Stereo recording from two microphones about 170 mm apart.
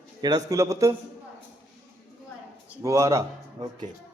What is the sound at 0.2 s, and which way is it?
Speech, 25° right (ahead or behind).